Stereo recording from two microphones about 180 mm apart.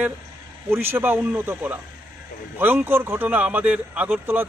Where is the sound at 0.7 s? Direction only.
10° right (ahead or behind).